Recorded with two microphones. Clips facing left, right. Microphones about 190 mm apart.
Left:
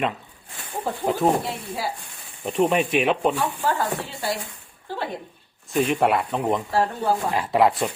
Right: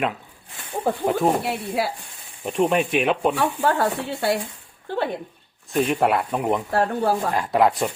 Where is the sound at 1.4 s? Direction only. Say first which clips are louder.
Right 5 dB; 65° right (ahead or behind).